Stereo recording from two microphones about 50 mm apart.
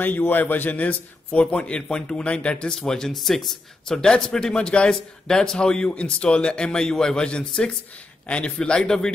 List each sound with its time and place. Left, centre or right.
0.0 s a man's voice: left
2.7 s speech: centre